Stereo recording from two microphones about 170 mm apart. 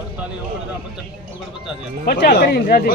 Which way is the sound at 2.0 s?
65° left (ahead or behind).